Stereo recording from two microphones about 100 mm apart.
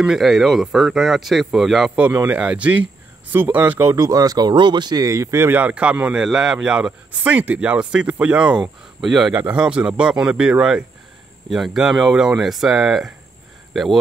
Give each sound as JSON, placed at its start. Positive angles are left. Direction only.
{"t": 0.0, "sound": "speech", "side_deg": -5}
{"t": 2.2, "sound": "speech", "side_deg": -10}
{"t": 3.8, "sound": "speech", "side_deg": -35}
{"t": 9.3, "sound": "speech", "side_deg": -15}